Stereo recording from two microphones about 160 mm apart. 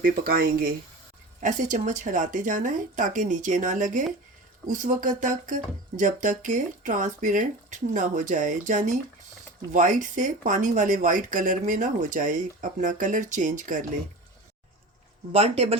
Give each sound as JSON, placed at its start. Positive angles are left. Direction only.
{"t": 0.0, "sound": "speech", "side_deg": -65}
{"t": 1.4, "sound": "speech", "side_deg": -50}
{"t": 15.3, "sound": "speech", "side_deg": -40}